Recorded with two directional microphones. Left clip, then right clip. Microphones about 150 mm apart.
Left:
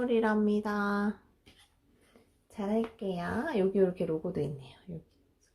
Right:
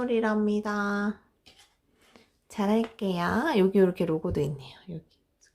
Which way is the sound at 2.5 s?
40° right (ahead or behind).